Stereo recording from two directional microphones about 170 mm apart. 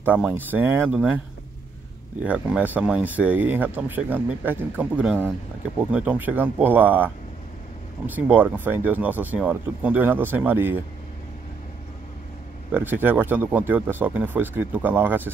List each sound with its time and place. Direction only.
0.0 s speech: 10° right (ahead or behind)
2.2 s speech: 5° right (ahead or behind)
8.3 s speech: 10° right (ahead or behind)
12.7 s speech: 10° right (ahead or behind)